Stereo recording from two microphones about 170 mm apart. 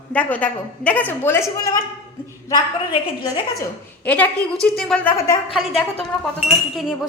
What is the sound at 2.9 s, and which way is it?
Speech, 30° left (ahead or behind).